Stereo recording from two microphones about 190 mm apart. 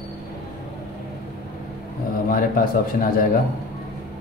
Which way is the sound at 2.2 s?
50° left (ahead or behind).